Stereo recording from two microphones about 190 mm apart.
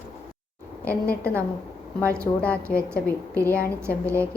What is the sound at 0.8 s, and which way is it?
Speech, 10° left (ahead or behind).